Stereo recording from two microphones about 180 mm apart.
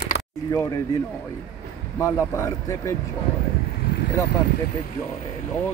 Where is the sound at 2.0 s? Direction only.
15° left (ahead or behind).